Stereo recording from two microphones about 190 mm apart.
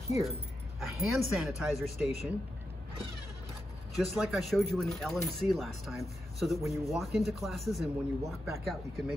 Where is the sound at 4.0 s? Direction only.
Centre (ahead or behind).